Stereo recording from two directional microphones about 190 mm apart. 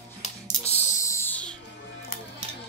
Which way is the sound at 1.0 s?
15° left (ahead or behind).